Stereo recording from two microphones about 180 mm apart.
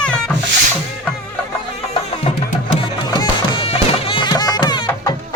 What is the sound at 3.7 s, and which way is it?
Music, 30° left (ahead or behind).